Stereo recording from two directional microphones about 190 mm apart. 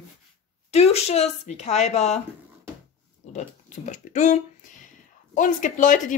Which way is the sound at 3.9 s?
40° left (ahead or behind).